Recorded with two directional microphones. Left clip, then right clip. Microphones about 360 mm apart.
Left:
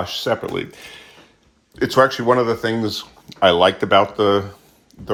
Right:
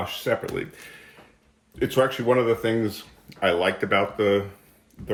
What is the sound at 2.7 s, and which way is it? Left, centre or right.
Speech, centre.